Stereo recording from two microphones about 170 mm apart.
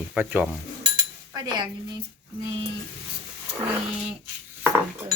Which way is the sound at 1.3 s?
25° right (ahead or behind).